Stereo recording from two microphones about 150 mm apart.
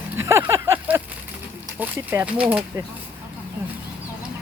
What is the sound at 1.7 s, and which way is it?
Speech, 15° right (ahead or behind).